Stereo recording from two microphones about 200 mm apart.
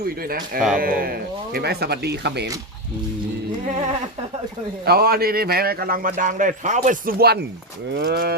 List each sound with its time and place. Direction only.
0.0 s a man's voice: 45° right (ahead or behind)
4.9 s a man's voice: 50° right (ahead or behind)